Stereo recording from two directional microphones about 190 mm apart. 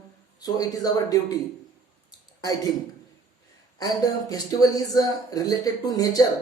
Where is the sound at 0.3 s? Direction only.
20° left (ahead or behind).